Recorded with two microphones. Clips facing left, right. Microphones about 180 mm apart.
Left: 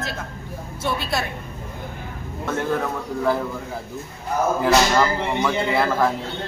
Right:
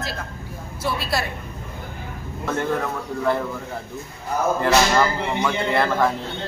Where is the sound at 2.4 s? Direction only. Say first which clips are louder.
Even; centre (ahead or behind).